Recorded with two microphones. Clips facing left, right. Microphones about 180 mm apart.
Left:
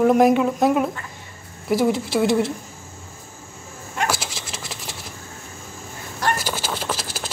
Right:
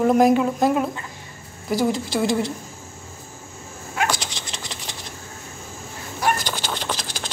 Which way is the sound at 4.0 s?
5° left (ahead or behind).